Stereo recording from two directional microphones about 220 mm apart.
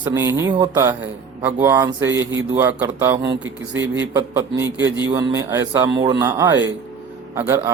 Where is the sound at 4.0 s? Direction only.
15° right (ahead or behind).